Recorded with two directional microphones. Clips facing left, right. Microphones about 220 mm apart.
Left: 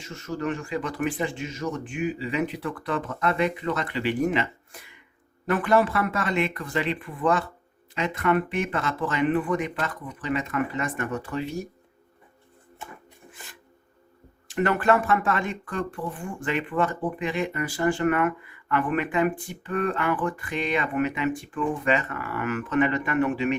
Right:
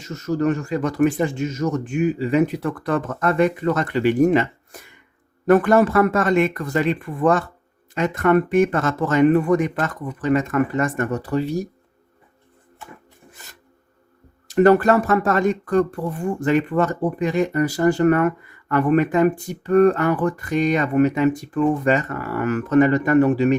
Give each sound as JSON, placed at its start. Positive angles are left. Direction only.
{"t": 0.0, "sound": "speech", "side_deg": -40}
{"t": 13.3, "sound": "a sound", "side_deg": -40}
{"t": 14.4, "sound": "speech", "side_deg": -40}